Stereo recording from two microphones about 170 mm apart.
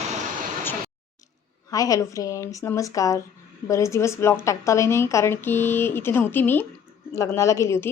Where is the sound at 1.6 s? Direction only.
20° left (ahead or behind).